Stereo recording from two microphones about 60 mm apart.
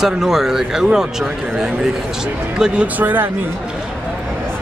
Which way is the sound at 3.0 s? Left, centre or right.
Right.